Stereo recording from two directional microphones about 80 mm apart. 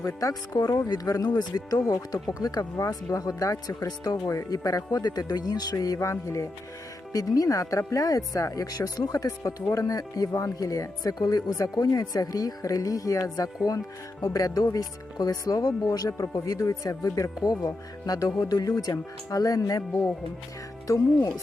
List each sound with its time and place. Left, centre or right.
0.2 s speech: left